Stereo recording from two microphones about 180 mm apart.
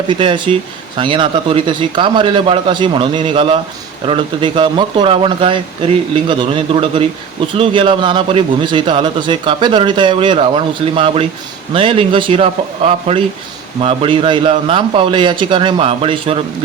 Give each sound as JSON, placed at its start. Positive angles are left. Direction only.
{"t": 0.1, "sound": "a man's voice", "side_deg": -25}